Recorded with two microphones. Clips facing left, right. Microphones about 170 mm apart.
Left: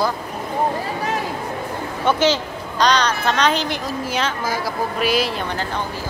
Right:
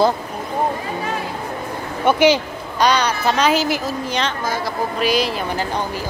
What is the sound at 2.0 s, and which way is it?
A woman's voice, 10° right (ahead or behind).